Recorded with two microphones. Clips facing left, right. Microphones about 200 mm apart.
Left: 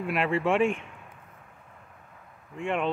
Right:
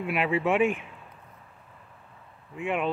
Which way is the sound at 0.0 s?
Centre (ahead or behind).